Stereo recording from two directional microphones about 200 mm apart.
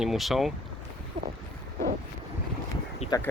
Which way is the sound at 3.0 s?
30° left (ahead or behind).